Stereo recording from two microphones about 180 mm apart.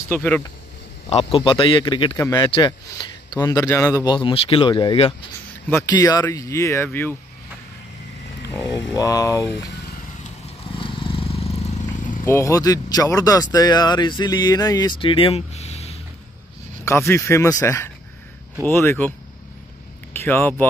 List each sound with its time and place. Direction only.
0.1 s speech: 10° left (ahead or behind)
1.1 s speech: 30° left (ahead or behind)
2.1 s speech: 15° left (ahead or behind)
2.4 s speech: 25° left (ahead or behind)
5.7 s speech: 15° left (ahead or behind)
8.6 s speech: 20° left (ahead or behind)
10.8 s vehicle: 30° left (ahead or behind)
12.3 s speech: 15° left (ahead or behind); by 16.0 s 35° left (ahead or behind)
16.8 s speech: 15° left (ahead or behind)